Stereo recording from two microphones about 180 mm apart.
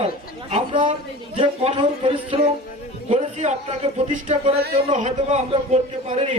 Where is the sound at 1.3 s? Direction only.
30° right (ahead or behind).